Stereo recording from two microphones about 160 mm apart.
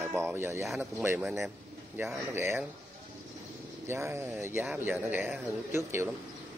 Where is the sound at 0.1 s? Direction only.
15° right (ahead or behind).